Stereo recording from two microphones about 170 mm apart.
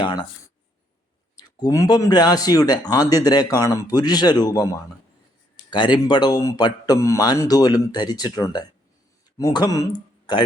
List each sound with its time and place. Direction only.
0.0 s speech: 25° left (ahead or behind)